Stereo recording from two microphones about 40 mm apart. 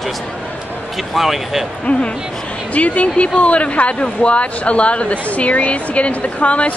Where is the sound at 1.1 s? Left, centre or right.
Centre.